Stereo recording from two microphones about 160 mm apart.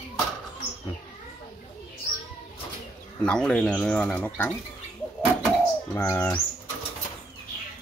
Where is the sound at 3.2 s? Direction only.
5° left (ahead or behind).